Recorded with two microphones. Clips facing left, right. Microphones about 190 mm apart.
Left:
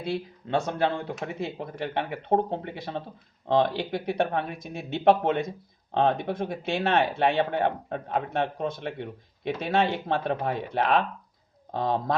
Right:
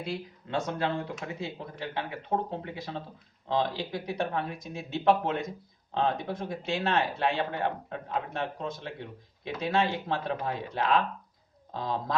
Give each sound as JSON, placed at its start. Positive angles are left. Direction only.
{"t": 0.0, "sound": "speech", "side_deg": 60}